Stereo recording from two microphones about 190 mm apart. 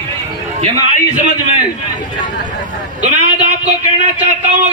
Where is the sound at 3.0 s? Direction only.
35° right (ahead or behind).